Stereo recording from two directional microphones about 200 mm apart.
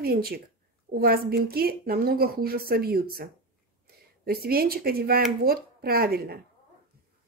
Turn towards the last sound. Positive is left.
turn(degrees=-50)  # may be behind; listen again after turning